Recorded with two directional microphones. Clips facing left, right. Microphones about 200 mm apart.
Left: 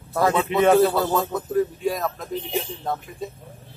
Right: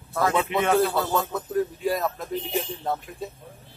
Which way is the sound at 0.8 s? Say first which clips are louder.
Left 4 dB; centre (ahead or behind).